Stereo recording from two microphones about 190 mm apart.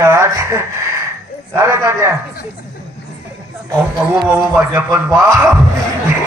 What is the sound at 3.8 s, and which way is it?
A man's voice, 5° right (ahead or behind).